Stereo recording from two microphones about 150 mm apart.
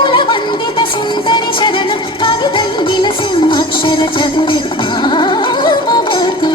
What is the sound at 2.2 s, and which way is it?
Music, 35° left (ahead or behind).